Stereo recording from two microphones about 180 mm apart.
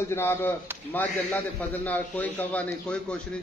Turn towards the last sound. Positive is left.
turn(degrees=5)  # may be behind; listen again after turning